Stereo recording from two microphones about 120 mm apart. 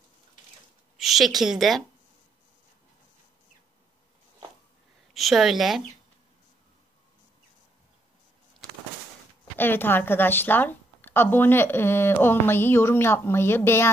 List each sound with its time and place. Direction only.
0.9 s a woman's voice: centre (ahead or behind)
5.1 s a woman's voice: centre (ahead or behind)
9.6 s a woman's voice: 15° left (ahead or behind)